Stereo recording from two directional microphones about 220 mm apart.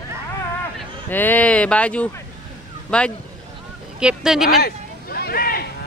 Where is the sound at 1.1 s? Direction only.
10° left (ahead or behind).